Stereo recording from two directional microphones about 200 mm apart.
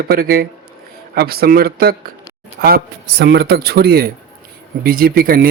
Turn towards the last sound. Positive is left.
turn(degrees=-45)  # may be behind; listen again after turning